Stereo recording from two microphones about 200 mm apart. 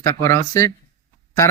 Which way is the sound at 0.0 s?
15° left (ahead or behind).